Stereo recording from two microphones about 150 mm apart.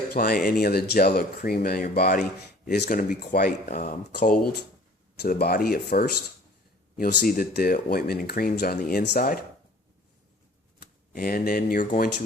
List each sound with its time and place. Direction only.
0.1 s speech: 90° left
2.6 s speech: 90° left; by 4.4 s 70° left (ahead or behind)
5.1 s speech: 90° left
11.1 s speech: 75° left (ahead or behind)